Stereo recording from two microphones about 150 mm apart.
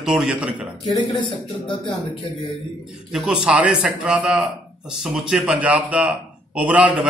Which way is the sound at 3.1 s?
5° right (ahead or behind).